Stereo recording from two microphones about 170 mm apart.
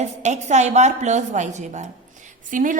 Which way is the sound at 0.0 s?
45° right (ahead or behind).